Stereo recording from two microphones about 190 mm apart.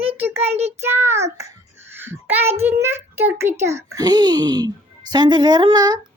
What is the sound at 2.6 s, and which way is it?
Speech, 15° right (ahead or behind).